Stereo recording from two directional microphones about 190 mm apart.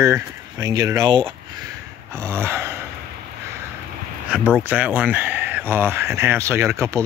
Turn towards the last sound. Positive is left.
turn(degrees=-15)  # may be behind; listen again after turning